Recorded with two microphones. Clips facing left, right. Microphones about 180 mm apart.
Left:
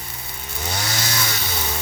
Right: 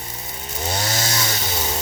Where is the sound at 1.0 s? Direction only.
25° right (ahead or behind).